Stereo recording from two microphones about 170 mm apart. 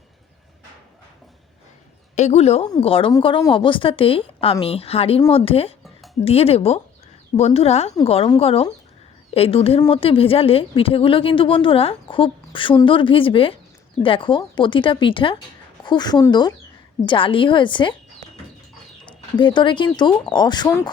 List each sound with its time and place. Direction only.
2.1 s speech: 40° left (ahead or behind)
19.4 s speech: 30° left (ahead or behind)